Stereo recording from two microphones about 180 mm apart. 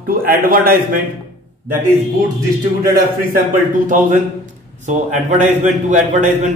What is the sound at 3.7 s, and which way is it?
Speech, 45° right (ahead or behind).